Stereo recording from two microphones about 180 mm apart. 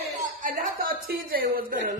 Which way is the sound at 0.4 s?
50° right (ahead or behind).